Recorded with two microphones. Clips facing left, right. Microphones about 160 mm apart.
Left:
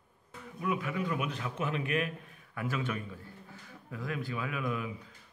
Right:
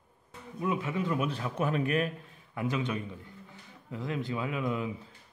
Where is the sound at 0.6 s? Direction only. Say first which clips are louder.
Right 2 dB; 25° right (ahead or behind).